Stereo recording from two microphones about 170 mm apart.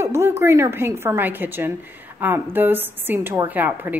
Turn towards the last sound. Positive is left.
turn(degrees=-10)  # may be behind; listen again after turning